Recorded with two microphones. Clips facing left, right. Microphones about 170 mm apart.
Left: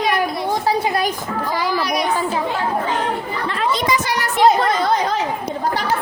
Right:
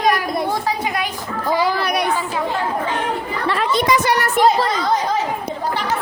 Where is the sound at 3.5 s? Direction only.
60° right (ahead or behind).